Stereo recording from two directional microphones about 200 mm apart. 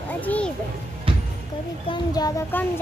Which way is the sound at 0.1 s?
10° left (ahead or behind).